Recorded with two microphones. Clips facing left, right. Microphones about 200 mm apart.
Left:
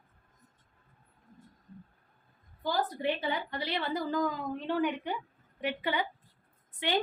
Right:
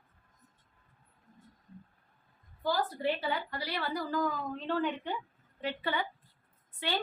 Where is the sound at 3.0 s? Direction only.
20° left (ahead or behind).